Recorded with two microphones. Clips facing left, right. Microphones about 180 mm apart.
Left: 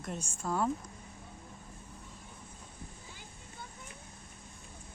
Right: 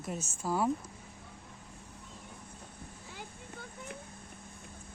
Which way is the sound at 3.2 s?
60° right (ahead or behind).